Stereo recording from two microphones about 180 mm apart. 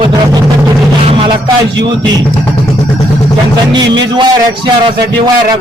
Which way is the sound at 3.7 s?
25° right (ahead or behind).